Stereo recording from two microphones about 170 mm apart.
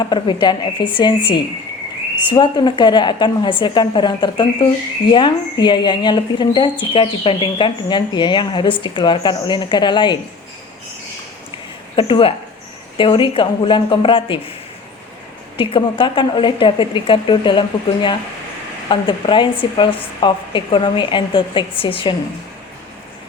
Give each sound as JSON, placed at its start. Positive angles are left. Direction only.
{"t": 0.0, "sound": "a woman's voice", "side_deg": 25}
{"t": 11.9, "sound": "a woman's voice", "side_deg": 30}
{"t": 15.5, "sound": "a woman's voice", "side_deg": 30}